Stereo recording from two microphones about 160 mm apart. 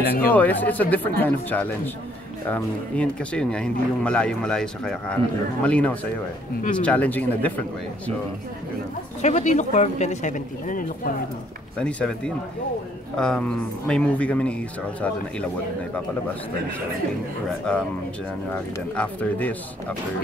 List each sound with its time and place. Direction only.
0.3 s speech: 10° left (ahead or behind)
9.2 s speech: 50° left (ahead or behind)
11.8 s speech: 5° left (ahead or behind)
13.2 s speech: 5° left (ahead or behind)
17.7 s speech: 5° left (ahead or behind)